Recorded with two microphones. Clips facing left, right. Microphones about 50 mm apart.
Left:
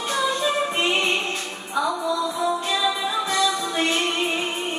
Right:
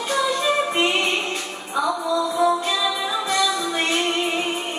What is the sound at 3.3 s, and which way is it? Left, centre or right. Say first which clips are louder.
Music: right 3 dB; right.